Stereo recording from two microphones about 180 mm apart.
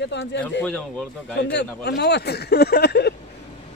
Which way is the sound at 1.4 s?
70° left (ahead or behind).